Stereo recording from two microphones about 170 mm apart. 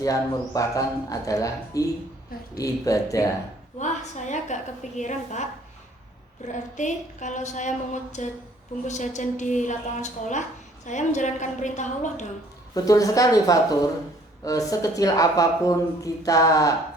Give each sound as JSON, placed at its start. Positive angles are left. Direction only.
{"t": 0.0, "sound": "a woman's voice", "side_deg": 20}
{"t": 3.8, "sound": "a woman's voice", "side_deg": 45}
{"t": 6.5, "sound": "a woman's voice", "side_deg": 45}
{"t": 12.7, "sound": "a woman's voice", "side_deg": 20}